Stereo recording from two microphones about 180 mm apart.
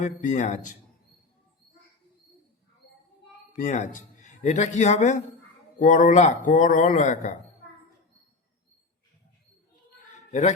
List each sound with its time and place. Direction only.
0.0 s a man's voice: 45° left (ahead or behind)
3.5 s a man's voice: 45° left (ahead or behind)
10.1 s a sound: 40° left (ahead or behind)